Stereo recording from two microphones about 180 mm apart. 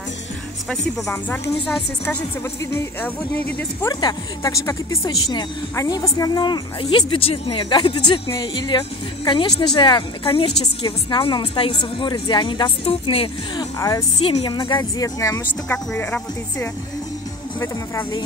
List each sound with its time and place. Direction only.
1.0 s speech: 15° left (ahead or behind)
3.9 s speech: 20° left (ahead or behind)
13.7 s speech: 20° left (ahead or behind)
14.1 s speech: 30° left (ahead or behind); by 18.2 s 15° left (ahead or behind)